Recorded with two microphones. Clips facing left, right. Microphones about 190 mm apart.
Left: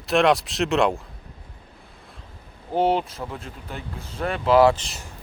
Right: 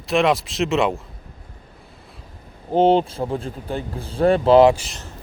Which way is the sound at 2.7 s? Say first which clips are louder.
Right 6 dB; 25° right (ahead or behind).